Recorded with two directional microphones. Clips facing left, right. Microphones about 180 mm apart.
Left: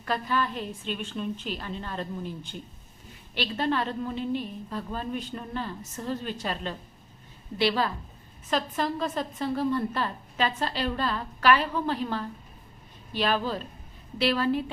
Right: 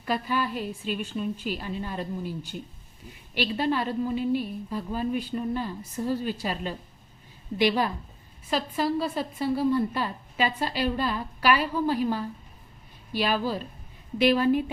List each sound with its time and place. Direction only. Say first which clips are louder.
0.0 s a woman's voice: right 1 dB; 10° right (ahead or behind)